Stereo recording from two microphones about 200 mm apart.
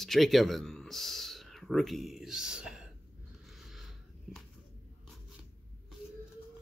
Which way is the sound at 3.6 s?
Centre (ahead or behind).